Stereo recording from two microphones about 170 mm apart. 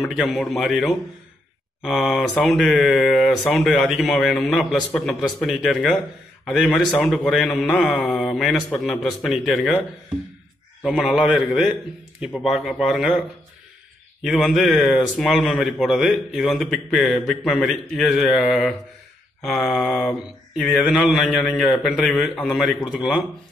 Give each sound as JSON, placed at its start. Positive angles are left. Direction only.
{"t": 0.0, "sound": "a man's voice", "side_deg": 0}
{"t": 2.0, "sound": "a man's voice", "side_deg": 10}
{"t": 10.8, "sound": "a man's voice", "side_deg": 0}
{"t": 14.2, "sound": "a man's voice", "side_deg": 0}